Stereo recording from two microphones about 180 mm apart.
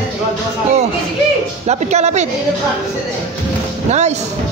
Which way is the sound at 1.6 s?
40° right (ahead or behind).